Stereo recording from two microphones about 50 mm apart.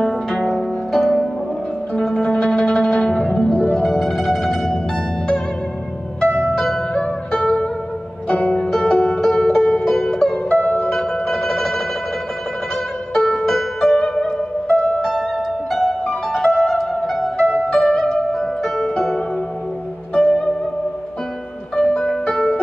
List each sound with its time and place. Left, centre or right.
0.6 s pizzicato: centre
2.3 s zither: centre
3.7 s music: centre
6.5 s music: centre
8.4 s music: left
8.6 s music: centre
10.6 s zither: left
10.9 s music: centre
13.1 s music: centre
14.8 s music: centre
20.2 s music: centre
21.9 s music: centre